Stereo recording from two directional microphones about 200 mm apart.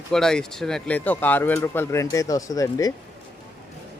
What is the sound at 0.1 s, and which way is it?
Speech, 5° left (ahead or behind).